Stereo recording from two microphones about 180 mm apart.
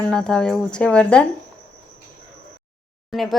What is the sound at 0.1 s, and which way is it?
Speech, 5° left (ahead or behind).